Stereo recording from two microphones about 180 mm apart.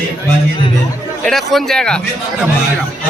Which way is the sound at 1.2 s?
Centre (ahead or behind).